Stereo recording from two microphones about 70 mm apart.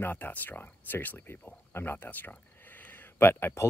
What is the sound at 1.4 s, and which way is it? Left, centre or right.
Speech, centre.